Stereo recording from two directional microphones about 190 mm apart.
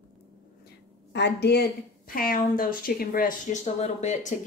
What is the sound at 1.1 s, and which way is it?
A woman's voice, 65° left (ahead or behind).